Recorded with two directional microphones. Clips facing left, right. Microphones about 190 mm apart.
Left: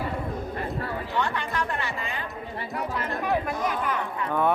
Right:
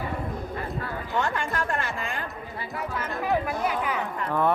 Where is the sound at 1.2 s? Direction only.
45° right (ahead or behind).